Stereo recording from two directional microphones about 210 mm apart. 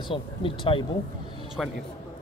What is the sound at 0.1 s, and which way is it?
Speech, 25° left (ahead or behind).